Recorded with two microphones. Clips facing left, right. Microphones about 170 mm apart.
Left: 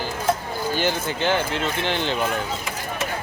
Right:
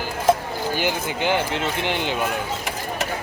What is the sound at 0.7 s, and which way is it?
Speech, 15° right (ahead or behind).